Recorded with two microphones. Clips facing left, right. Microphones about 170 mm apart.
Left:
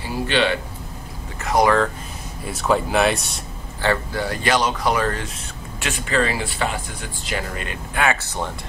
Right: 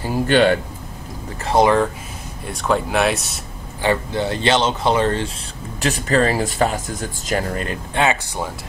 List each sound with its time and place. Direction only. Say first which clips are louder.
0.0 s a sound: right 5 dB; 45° right (ahead or behind)
1.4 s speech: right 2 dB; 25° right (ahead or behind)
2.4 s speech: even; centre (ahead or behind)
3.8 s speech: right 3 dB; 20° right (ahead or behind); by 7.8 s 40° right (ahead or behind)
7.9 s speech: right 2 dB; 25° right (ahead or behind)